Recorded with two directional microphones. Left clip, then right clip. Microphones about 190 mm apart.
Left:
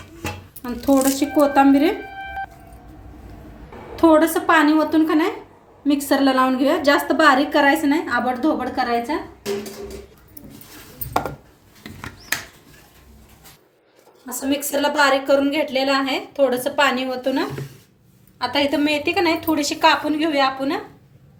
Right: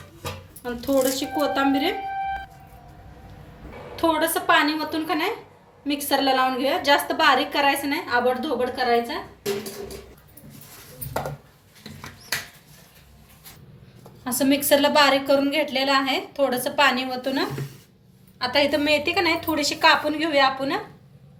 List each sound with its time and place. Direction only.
0.6 s a woman's voice: 45° left (ahead or behind)
3.9 s a woman's voice: 45° left (ahead or behind)
14.5 s a woman's voice: 40° left (ahead or behind)